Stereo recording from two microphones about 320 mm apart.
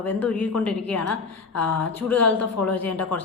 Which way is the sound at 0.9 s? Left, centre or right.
Left.